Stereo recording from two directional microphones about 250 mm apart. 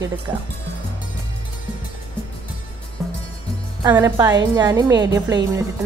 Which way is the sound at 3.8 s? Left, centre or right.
Centre.